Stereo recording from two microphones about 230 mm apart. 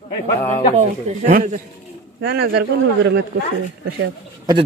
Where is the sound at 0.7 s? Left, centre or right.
Right.